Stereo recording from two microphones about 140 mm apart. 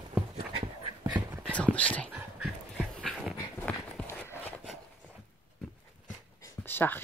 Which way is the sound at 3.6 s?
15° left (ahead or behind).